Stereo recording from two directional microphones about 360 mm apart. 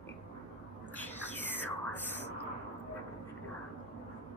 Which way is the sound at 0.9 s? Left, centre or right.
Centre.